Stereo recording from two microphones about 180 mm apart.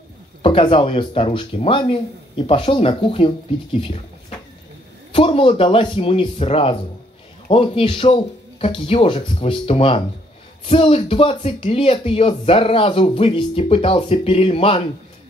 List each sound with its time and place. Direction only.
0.4 s speech: 30° left (ahead or behind)
5.1 s speech: 30° left (ahead or behind)